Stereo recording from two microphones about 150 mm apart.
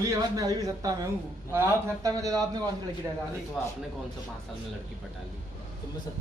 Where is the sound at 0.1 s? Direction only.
25° right (ahead or behind).